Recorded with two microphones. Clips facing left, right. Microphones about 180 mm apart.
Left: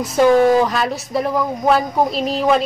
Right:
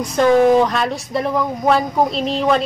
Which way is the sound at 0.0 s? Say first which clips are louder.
Even; 5° left (ahead or behind).